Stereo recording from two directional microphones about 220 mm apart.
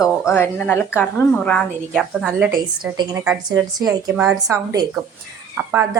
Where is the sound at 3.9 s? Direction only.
5° right (ahead or behind).